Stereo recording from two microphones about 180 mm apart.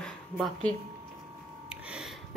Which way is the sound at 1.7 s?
5° right (ahead or behind).